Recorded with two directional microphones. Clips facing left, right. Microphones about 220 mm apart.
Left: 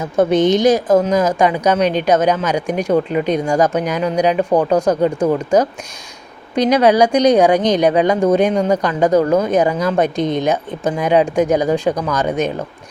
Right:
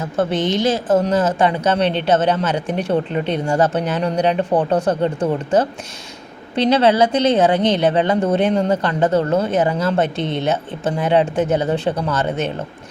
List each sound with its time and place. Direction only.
0.0 s speech: 15° left (ahead or behind)
6.7 s speech: 15° left (ahead or behind)